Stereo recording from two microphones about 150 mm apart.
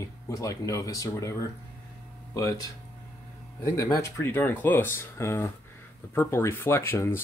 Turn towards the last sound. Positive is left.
turn(degrees=15)  # may be behind; listen again after turning